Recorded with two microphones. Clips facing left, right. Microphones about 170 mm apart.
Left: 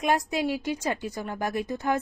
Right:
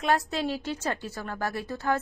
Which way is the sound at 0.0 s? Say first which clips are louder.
Left 1 dB; 15° left (ahead or behind).